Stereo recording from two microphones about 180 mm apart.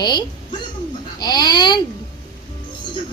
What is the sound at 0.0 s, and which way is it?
A woman's voice, 25° left (ahead or behind).